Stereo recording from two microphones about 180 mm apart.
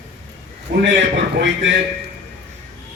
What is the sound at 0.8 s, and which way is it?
Speech, 75° right (ahead or behind).